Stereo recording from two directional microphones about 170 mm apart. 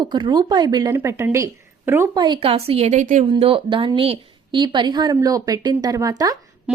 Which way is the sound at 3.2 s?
35° right (ahead or behind).